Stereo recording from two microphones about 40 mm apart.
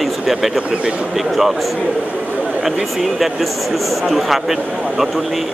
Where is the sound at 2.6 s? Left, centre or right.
Centre.